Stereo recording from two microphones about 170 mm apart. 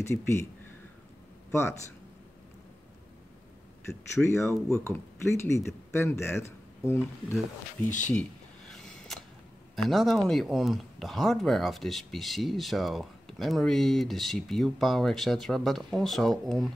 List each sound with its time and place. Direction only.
0.0 s speech: 15° left (ahead or behind)
1.5 s speech: 15° left (ahead or behind)
3.8 s speech: 15° left (ahead or behind)
8.1 s a sound: 5° left (ahead or behind)
9.8 s speech: centre (ahead or behind)